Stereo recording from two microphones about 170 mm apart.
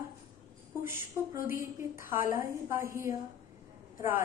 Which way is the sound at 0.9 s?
15° right (ahead or behind).